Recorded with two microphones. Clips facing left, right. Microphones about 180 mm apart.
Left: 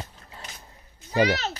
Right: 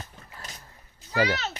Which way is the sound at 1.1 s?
15° left (ahead or behind).